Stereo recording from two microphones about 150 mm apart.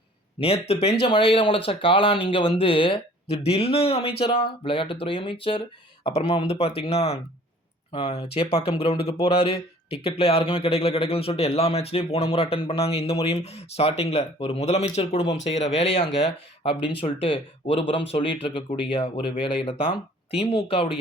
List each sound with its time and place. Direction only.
0.3 s speech: 40° left (ahead or behind)